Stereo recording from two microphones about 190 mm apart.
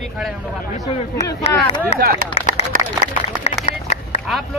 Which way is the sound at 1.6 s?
30° left (ahead or behind).